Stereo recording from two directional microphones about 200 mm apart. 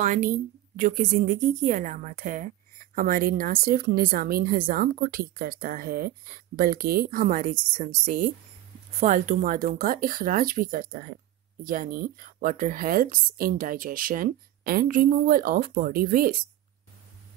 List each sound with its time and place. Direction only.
0.0 s a woman's voice: 35° right (ahead or behind)